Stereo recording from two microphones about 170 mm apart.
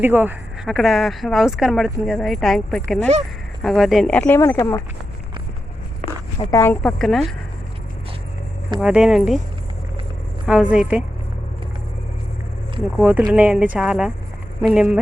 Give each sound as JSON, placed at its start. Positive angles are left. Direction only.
{"t": 0.0, "sound": "speech", "side_deg": -10}
{"t": 0.7, "sound": "speech", "side_deg": 0}
{"t": 6.5, "sound": "speech", "side_deg": 15}
{"t": 6.8, "sound": "speech", "side_deg": 0}
{"t": 8.8, "sound": "speech", "side_deg": -5}
{"t": 10.4, "sound": "speech", "side_deg": -5}
{"t": 13.0, "sound": "speech", "side_deg": -10}